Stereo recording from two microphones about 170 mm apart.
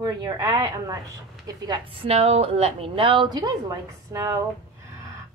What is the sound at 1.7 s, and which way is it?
A woman's voice, 35° right (ahead or behind).